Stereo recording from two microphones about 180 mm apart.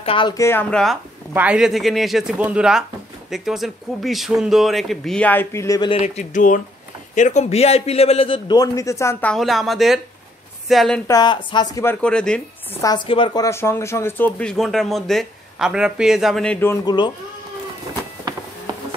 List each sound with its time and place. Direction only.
0.0 s speech: 30° left (ahead or behind)
0.3 s speech: 15° left (ahead or behind)
1.3 s speech: 5° right (ahead or behind); by 5.9 s 20° left (ahead or behind)
5.9 s a man's voice: 35° left (ahead or behind); by 11.0 s centre (ahead or behind)
11.1 s speech: 25° left (ahead or behind); by 12.4 s 5° left (ahead or behind)
12.8 s speech: 25° left (ahead or behind); by 16.7 s 10° left (ahead or behind)
16.8 s a man's voice: 25° left (ahead or behind)